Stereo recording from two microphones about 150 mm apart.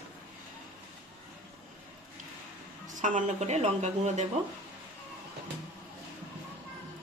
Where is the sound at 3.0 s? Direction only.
55° right (ahead or behind).